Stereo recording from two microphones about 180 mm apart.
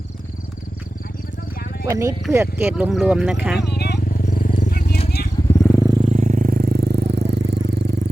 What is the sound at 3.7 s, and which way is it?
Wild animals, 65° left (ahead or behind).